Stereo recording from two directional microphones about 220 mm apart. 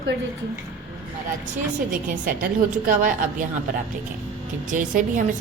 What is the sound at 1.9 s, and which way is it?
A woman's voice, 35° right (ahead or behind).